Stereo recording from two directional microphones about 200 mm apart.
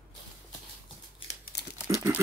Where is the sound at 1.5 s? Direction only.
60° left (ahead or behind).